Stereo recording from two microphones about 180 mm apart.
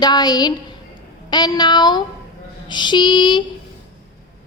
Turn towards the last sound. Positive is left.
turn(degrees=25)  # may be behind; listen again after turning